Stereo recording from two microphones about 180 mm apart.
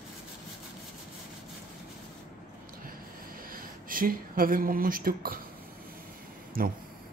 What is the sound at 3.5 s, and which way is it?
Speech, 50° right (ahead or behind).